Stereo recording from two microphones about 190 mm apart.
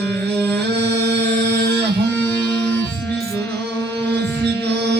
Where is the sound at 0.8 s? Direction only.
65° right (ahead or behind).